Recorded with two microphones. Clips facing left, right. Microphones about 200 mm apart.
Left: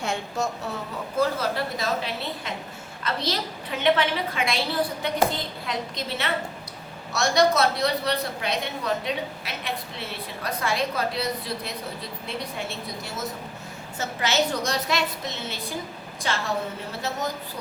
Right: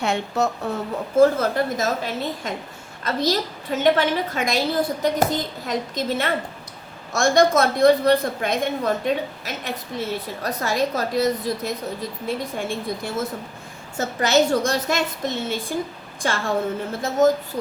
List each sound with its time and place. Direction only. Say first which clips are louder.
0.0 s speech: right 5 dB; 65° right (ahead or behind)
1.2 s a woman's voice: right 8 dB; 50° right (ahead or behind)